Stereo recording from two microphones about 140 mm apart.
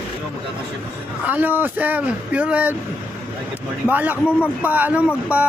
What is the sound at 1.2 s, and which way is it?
Speech, 10° right (ahead or behind).